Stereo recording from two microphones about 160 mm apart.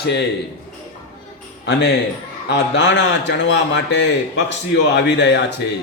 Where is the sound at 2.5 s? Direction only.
90° left.